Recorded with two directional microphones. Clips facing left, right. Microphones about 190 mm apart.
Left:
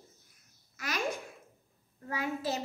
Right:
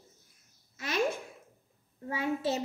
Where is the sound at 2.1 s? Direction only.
25° right (ahead or behind).